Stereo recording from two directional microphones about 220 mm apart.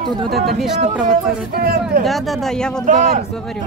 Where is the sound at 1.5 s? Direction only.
45° right (ahead or behind).